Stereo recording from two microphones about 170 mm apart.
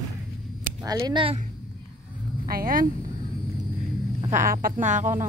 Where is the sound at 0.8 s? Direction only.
25° right (ahead or behind).